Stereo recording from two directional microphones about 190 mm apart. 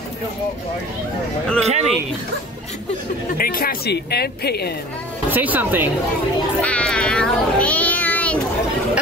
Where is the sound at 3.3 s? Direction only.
50° left (ahead or behind).